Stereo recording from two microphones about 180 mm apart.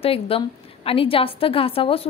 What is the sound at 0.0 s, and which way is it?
A woman's voice, 30° left (ahead or behind).